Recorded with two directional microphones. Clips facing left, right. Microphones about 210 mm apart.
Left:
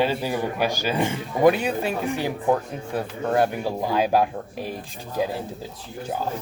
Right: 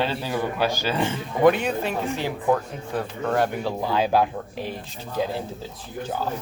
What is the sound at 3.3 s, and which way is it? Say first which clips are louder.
Speech: left 2 dB; 10° left (ahead or behind).